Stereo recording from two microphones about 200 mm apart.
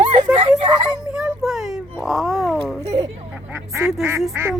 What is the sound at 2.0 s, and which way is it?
Speech, centre (ahead or behind).